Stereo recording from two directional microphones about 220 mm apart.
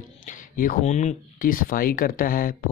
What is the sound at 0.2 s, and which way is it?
Speech, 40° left (ahead or behind).